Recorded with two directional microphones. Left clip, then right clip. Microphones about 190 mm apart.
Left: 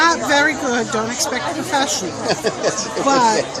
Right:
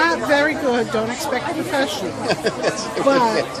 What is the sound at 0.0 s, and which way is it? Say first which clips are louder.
Chatter: left 2 dB; 50° left (ahead or behind).